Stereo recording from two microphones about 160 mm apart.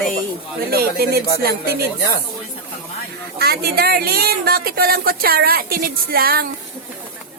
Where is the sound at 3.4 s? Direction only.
75° right (ahead or behind).